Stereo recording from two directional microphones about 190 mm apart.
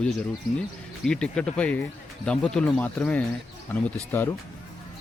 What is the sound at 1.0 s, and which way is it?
A man's voice, 5° left (ahead or behind).